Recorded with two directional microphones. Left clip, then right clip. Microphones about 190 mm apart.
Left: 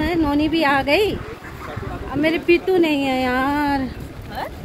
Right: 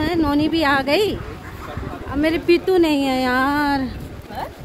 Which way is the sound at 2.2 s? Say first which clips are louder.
Even; 65° right (ahead or behind).